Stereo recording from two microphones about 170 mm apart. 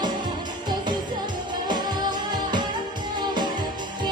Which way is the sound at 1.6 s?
25° right (ahead or behind).